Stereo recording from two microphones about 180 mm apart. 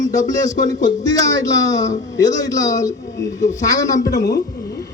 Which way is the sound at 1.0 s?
20° left (ahead or behind).